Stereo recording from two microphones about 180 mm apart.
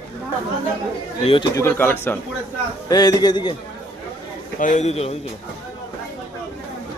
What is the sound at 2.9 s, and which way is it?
Speech, 20° left (ahead or behind).